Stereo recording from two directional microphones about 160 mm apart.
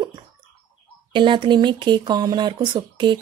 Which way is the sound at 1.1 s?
30° right (ahead or behind).